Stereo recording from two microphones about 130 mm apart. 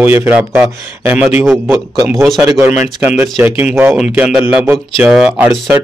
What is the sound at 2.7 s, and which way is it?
A man's voice, 10° right (ahead or behind).